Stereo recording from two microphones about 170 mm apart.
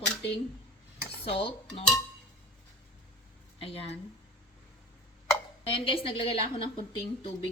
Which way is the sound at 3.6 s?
35° left (ahead or behind).